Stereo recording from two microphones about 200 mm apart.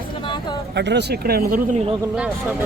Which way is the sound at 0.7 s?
60° right (ahead or behind).